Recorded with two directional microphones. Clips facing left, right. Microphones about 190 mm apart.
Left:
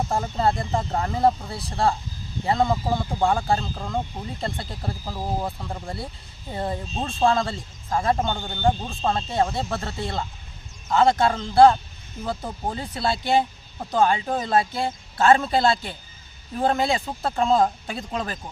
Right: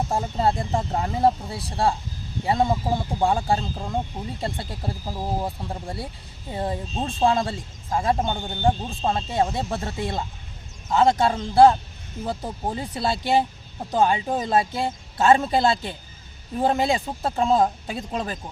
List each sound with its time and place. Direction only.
0.1 s speech: 15° right (ahead or behind)